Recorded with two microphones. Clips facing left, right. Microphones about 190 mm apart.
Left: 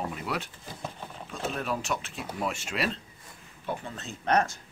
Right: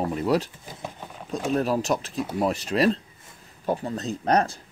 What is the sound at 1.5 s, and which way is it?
Speech, 35° right (ahead or behind).